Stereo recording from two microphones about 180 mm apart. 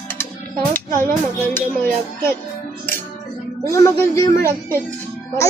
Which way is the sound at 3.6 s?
15° left (ahead or behind).